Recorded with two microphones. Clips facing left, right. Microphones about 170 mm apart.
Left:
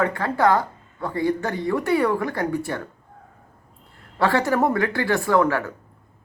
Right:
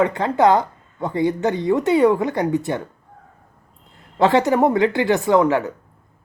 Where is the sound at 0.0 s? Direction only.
20° right (ahead or behind).